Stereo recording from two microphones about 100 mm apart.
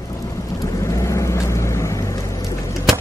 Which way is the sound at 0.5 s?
30° left (ahead or behind).